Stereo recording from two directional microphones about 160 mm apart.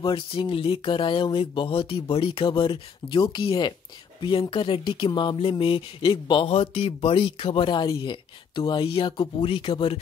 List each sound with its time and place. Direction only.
0.0 s speech: 30° left (ahead or behind)